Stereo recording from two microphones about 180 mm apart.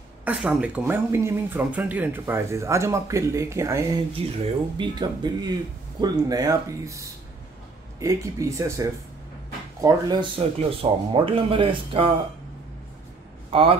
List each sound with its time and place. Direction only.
0.2 s speech: 5° right (ahead or behind); by 12.1 s 30° right (ahead or behind)
13.5 s a man's voice: 30° right (ahead or behind)